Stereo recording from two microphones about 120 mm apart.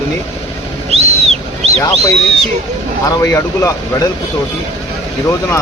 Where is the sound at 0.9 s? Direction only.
60° right (ahead or behind).